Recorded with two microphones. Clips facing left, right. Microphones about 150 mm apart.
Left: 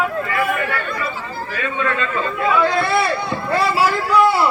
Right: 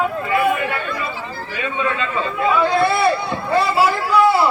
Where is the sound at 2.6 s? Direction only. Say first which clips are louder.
Right 2 dB; centre (ahead or behind).